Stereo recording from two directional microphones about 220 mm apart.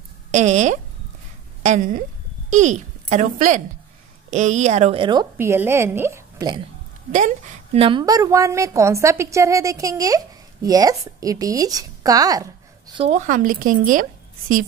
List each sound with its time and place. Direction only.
0.3 s a woman's voice: 35° right (ahead or behind)
5.4 s a woman's voice: 10° right (ahead or behind)
7.1 s a woman's voice: 35° right (ahead or behind)